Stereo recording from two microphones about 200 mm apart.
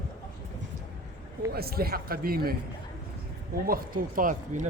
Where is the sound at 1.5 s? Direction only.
50° right (ahead or behind).